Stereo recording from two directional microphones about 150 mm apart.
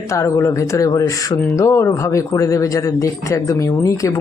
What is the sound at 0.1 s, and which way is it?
Speech, 20° left (ahead or behind).